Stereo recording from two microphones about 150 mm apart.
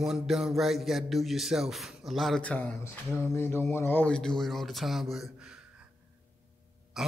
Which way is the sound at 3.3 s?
15° left (ahead or behind).